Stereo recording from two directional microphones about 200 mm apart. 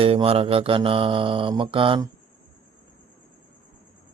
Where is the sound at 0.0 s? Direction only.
30° right (ahead or behind).